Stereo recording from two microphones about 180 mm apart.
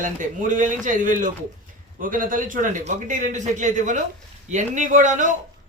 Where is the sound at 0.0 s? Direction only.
45° right (ahead or behind).